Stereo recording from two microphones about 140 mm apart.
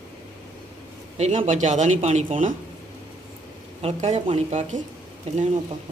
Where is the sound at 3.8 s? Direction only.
45° right (ahead or behind).